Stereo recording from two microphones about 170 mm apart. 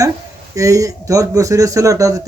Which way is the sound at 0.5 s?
20° right (ahead or behind).